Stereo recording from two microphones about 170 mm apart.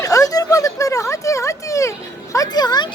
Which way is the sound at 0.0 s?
20° left (ahead or behind).